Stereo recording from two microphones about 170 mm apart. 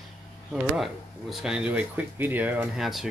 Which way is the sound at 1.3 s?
5° right (ahead or behind).